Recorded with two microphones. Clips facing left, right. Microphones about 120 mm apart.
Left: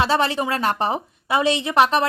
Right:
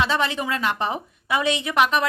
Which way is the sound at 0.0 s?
35° left (ahead or behind).